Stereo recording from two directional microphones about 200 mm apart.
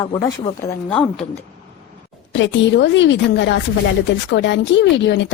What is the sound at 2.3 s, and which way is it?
Speech, 65° left (ahead or behind).